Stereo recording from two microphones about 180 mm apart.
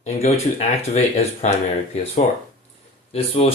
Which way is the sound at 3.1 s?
35° left (ahead or behind).